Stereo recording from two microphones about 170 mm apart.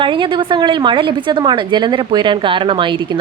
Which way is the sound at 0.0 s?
30° right (ahead or behind).